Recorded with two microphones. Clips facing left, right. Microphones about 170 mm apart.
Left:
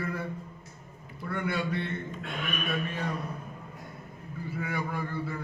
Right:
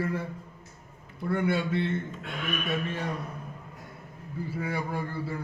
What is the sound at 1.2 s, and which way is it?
Speech, 25° right (ahead or behind).